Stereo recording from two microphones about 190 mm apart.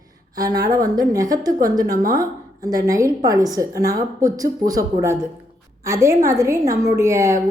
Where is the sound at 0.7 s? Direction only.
20° right (ahead or behind).